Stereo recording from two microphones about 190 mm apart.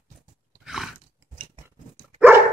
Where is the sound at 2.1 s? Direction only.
10° right (ahead or behind).